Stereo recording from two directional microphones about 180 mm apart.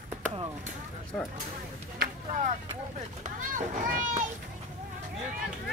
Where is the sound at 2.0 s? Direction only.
45° right (ahead or behind).